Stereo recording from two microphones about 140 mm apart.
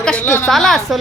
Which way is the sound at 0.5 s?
Centre (ahead or behind).